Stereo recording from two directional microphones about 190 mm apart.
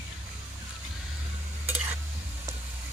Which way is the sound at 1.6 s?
10° right (ahead or behind).